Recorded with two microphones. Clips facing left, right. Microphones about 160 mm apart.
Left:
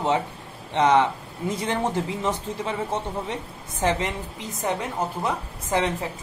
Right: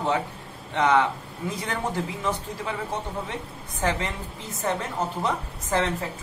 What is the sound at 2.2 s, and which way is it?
A man's voice, 20° left (ahead or behind).